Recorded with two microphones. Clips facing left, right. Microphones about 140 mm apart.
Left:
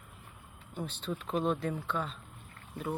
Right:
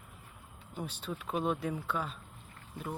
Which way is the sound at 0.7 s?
10° right (ahead or behind).